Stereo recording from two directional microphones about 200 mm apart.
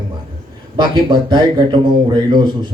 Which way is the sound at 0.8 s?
20° right (ahead or behind).